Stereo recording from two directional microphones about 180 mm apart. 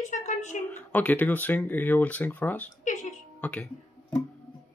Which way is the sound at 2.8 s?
45° left (ahead or behind).